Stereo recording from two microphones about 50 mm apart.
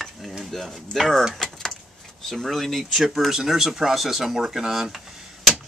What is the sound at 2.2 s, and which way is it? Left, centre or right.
Speech, centre.